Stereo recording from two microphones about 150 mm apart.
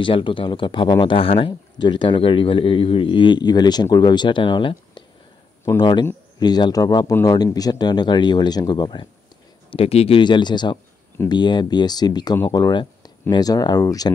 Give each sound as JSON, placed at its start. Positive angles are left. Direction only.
{"t": 0.0, "sound": "speech", "side_deg": 35}
{"t": 9.7, "sound": "speech", "side_deg": 40}